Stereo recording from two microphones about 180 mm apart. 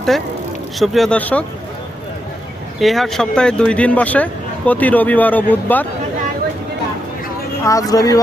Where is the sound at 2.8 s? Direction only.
Centre (ahead or behind).